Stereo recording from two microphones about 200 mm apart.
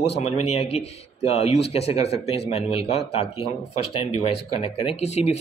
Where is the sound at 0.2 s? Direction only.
30° left (ahead or behind).